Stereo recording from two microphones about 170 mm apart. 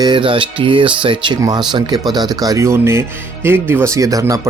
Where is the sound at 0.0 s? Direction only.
30° right (ahead or behind).